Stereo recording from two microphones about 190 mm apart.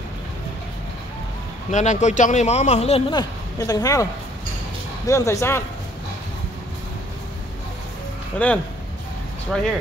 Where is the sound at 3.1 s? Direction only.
20° left (ahead or behind).